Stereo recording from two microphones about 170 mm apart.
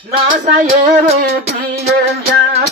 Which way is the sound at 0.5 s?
45° right (ahead or behind).